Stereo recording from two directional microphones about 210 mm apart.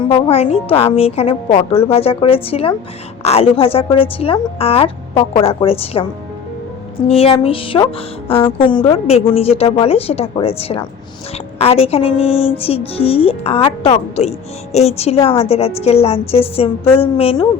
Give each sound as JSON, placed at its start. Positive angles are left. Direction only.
{"t": 0.3, "sound": "speech", "side_deg": 30}
{"t": 7.1, "sound": "speech", "side_deg": 30}